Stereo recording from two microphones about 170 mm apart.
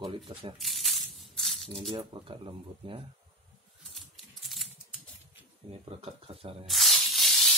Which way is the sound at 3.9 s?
Centre (ahead or behind).